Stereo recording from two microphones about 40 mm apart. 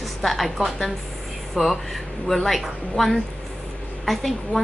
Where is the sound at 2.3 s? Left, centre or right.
Centre.